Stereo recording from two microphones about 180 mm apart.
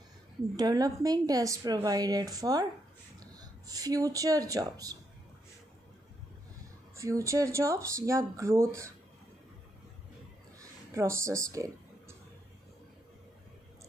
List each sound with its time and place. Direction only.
0.6 s a woman's voice: 20° right (ahead or behind)
7.0 s speech: 15° right (ahead or behind)
10.6 s a sound: 15° right (ahead or behind)